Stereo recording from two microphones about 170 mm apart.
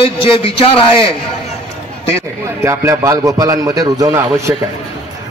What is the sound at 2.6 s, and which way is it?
A man's voice, 15° right (ahead or behind).